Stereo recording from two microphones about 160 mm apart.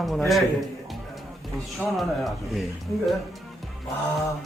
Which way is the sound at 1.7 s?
Centre (ahead or behind).